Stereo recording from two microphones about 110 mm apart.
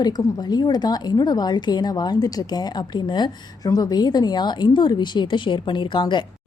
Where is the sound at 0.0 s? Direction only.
35° left (ahead or behind).